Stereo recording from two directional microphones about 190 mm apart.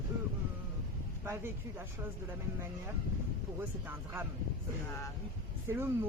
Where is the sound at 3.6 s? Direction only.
10° right (ahead or behind).